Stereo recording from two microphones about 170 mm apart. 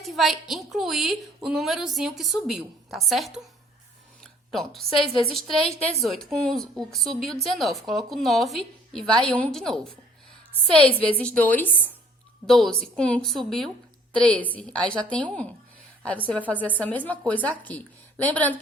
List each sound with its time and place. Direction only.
0.0 s a woman's voice: centre (ahead or behind)
5.6 s a woman's voice: 35° left (ahead or behind)
6.0 s a woman's voice: centre (ahead or behind)
11.2 s a woman's voice: 10° left (ahead or behind)